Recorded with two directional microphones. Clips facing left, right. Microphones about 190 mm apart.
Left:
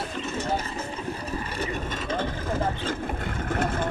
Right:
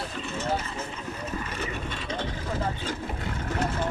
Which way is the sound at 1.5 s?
40° left (ahead or behind).